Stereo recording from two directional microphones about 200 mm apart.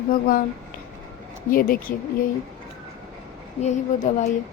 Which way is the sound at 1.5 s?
45° left (ahead or behind).